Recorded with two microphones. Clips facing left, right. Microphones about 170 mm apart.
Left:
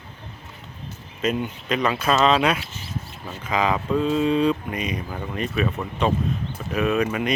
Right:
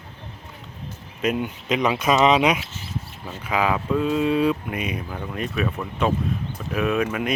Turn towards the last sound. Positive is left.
turn(degrees=0)  # may be behind; listen again after turning